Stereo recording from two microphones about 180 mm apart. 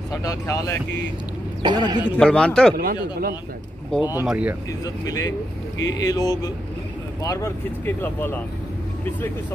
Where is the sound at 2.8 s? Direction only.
55° right (ahead or behind).